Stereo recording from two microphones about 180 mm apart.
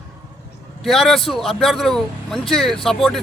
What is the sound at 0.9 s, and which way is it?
Speech, centre (ahead or behind).